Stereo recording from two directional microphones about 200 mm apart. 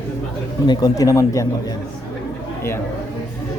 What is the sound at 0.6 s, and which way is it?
Speech, 20° left (ahead or behind).